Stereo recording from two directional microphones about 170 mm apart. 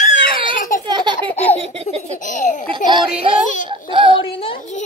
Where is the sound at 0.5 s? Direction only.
55° left (ahead or behind).